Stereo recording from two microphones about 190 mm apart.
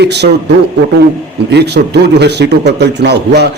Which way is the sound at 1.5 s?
60° right (ahead or behind).